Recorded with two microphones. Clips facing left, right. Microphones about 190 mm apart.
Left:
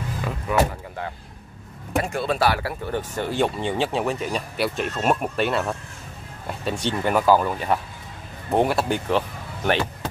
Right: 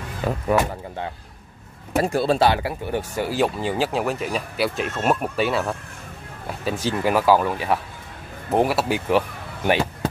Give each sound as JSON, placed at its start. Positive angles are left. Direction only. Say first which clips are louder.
{"t": 0.5, "sound": "speech", "louder": "right 1 dB", "side_deg": -40}
{"t": 2.0, "sound": "speech", "louder": "right 4 dB", "side_deg": -35}